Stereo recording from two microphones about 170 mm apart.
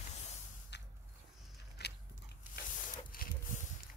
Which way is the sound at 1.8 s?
75° left (ahead or behind).